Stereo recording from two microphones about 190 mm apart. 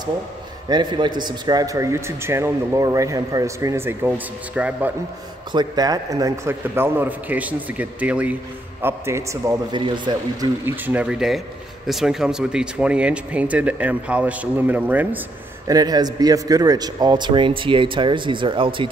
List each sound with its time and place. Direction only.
0.7 s a man's voice: 25° right (ahead or behind); by 4.9 s 5° right (ahead or behind)
5.5 s a man's voice: 20° right (ahead or behind)
10.6 s a man's voice: 10° right (ahead or behind)
15.6 s a man's voice: 20° right (ahead or behind)